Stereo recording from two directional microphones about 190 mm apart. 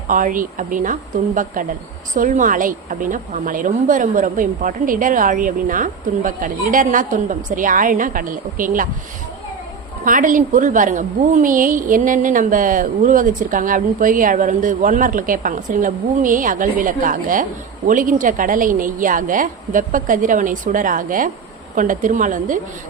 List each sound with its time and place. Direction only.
0.1 s a woman's voice: 45° right (ahead or behind)
10.0 s a woman's voice: 45° right (ahead or behind)